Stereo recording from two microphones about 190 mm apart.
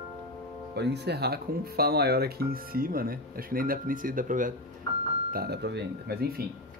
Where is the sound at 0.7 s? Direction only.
60° right (ahead or behind); by 4.5 s 45° right (ahead or behind).